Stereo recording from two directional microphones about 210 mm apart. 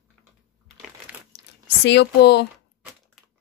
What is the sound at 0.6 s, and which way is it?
Crushing, centre (ahead or behind).